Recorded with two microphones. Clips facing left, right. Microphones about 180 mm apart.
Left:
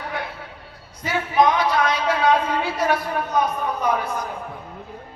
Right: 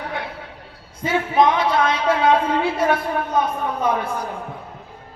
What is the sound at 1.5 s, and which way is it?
Speech, 25° right (ahead or behind).